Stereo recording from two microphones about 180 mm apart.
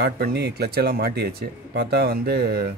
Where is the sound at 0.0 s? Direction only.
65° right (ahead or behind).